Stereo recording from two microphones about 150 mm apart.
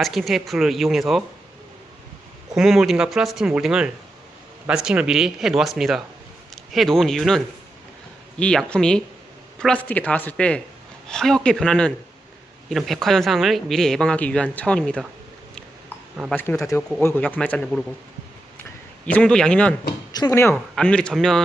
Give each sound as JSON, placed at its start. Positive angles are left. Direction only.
{"t": 0.0, "sound": "speech", "side_deg": 0}
{"t": 2.6, "sound": "speech", "side_deg": 0}
{"t": 16.3, "sound": "speech", "side_deg": 10}
{"t": 19.0, "sound": "speech", "side_deg": 10}
{"t": 20.1, "sound": "speech", "side_deg": 20}
{"t": 20.7, "sound": "speech", "side_deg": 5}